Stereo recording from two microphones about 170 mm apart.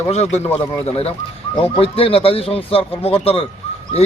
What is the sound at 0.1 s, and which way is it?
Speech, 40° left (ahead or behind).